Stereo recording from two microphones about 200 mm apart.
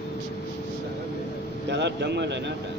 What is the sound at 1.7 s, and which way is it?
Speech, 60° right (ahead or behind).